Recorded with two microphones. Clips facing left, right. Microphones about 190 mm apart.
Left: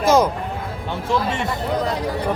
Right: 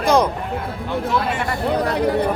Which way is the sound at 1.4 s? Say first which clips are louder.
Right 2 dB; 65° right (ahead or behind).